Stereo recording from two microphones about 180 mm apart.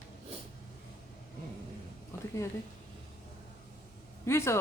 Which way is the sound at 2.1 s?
15° left (ahead or behind).